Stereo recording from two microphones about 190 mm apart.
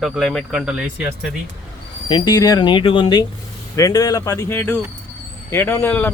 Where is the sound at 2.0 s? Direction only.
25° left (ahead or behind).